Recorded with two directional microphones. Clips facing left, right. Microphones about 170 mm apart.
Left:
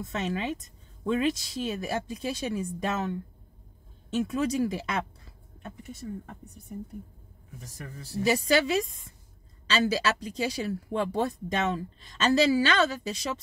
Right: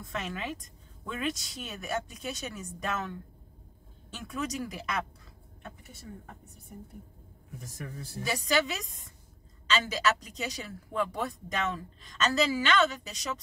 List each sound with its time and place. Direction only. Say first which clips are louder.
0.0 s speech: left 6 dB; 25° left (ahead or behind)
8.2 s speech: left 5 dB; 30° left (ahead or behind)